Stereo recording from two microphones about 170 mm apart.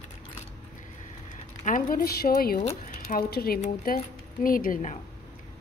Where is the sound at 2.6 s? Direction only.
50° left (ahead or behind).